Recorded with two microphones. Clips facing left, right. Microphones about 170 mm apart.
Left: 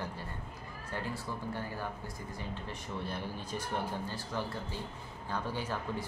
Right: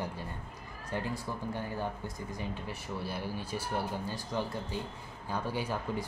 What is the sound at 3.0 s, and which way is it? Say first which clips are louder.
Speech: right 1 dB; 5° right (ahead or behind).